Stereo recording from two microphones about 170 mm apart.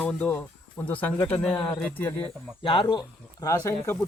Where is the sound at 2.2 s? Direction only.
30° left (ahead or behind).